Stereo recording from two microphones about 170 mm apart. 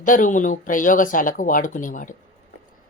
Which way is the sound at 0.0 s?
50° left (ahead or behind).